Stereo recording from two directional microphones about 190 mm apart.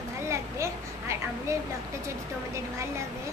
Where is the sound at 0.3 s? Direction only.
15° right (ahead or behind).